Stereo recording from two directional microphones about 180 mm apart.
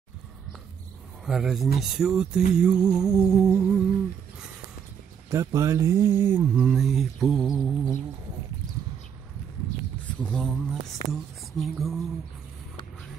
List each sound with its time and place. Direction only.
1.2 s speech: centre (ahead or behind)
3.5 s humming: 10° right (ahead or behind)
5.3 s speech: 15° right (ahead or behind); by 7.9 s centre (ahead or behind)
10.3 s speech: centre (ahead or behind)